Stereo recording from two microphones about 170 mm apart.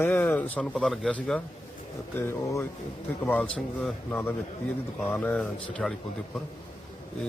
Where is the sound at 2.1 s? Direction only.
15° left (ahead or behind).